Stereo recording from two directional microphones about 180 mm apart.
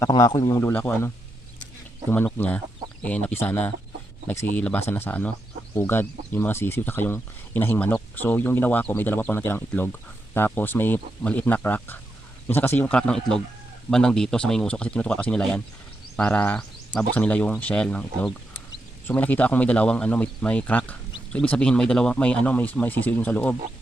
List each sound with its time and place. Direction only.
0.0 s speech: 20° left (ahead or behind)